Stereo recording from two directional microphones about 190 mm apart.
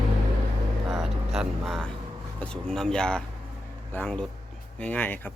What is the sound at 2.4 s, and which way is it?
A man's voice, 5° left (ahead or behind).